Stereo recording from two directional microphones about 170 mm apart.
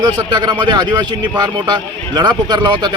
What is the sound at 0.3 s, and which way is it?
A man's voice, 25° right (ahead or behind).